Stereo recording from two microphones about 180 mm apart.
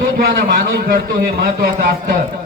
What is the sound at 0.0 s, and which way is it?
Speech, 60° right (ahead or behind).